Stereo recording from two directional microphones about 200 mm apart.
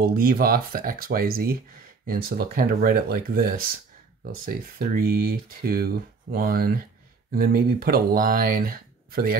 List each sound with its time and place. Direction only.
0.0 s speech: 45° right (ahead or behind)